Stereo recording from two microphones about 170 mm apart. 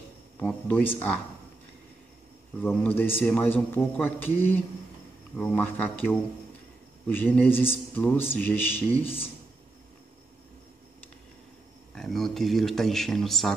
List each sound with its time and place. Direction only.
0.4 s a man's voice: 10° left (ahead or behind)
2.6 s a man's voice: 10° left (ahead or behind)
9.0 s speech: 35° left (ahead or behind)
11.9 s speech: centre (ahead or behind)